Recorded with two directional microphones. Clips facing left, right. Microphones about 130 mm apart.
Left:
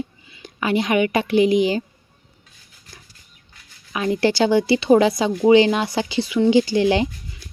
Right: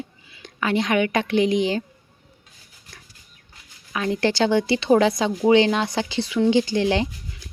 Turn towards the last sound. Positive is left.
turn(degrees=10)  # may be behind; listen again after turning